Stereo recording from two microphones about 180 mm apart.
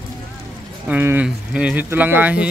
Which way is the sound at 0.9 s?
10° right (ahead or behind).